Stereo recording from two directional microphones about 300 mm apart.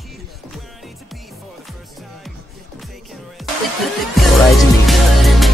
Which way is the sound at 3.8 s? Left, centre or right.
Centre.